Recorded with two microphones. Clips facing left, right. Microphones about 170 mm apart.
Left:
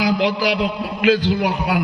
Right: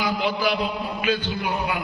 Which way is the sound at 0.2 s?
90° left.